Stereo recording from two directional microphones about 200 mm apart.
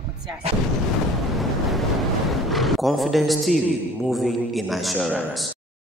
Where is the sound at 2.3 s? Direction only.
Centre (ahead or behind).